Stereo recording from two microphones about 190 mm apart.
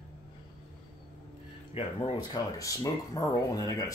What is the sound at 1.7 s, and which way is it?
Speech, 25° left (ahead or behind).